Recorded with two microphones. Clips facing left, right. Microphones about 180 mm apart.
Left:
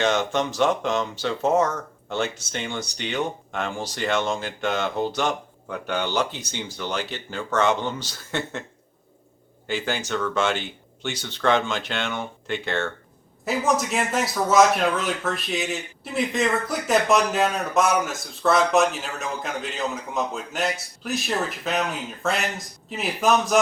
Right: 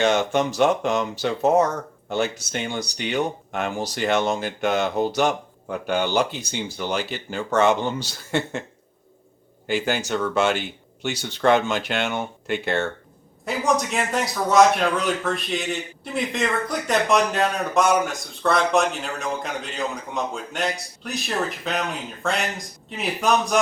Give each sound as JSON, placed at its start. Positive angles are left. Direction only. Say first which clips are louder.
{"t": 0.0, "sound": "speech", "louder": "right 2 dB", "side_deg": -10}
{"t": 2.0, "sound": "speech", "louder": "right 3 dB", "side_deg": -10}
{"t": 9.6, "sound": "speech", "louder": "right 3 dB", "side_deg": -10}
{"t": 13.4, "sound": "speech", "louder": "even", "side_deg": 0}